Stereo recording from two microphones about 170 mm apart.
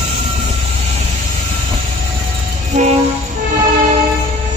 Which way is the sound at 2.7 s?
45° right (ahead or behind).